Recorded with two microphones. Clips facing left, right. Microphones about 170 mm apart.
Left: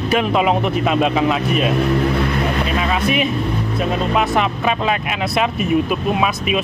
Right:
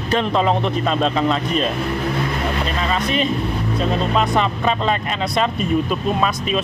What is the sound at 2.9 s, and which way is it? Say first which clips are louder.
Speech: right 1 dB; 10° left (ahead or behind).